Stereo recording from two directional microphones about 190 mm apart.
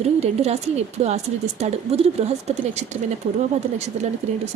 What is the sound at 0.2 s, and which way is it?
Speech, 35° right (ahead or behind).